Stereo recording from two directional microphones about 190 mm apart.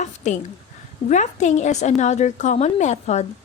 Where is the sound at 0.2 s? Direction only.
35° left (ahead or behind).